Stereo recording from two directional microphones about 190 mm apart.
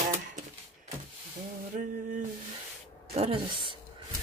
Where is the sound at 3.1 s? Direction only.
30° right (ahead or behind).